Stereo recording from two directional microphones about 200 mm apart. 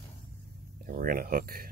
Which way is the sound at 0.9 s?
45° right (ahead or behind).